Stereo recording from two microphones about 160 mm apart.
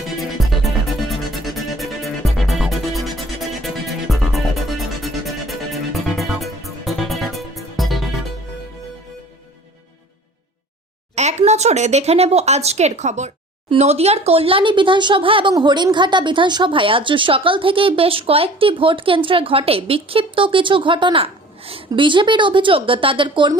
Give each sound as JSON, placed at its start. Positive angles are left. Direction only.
{"t": 0.3, "sound": "music", "side_deg": 0}
{"t": 11.1, "sound": "speech", "side_deg": -45}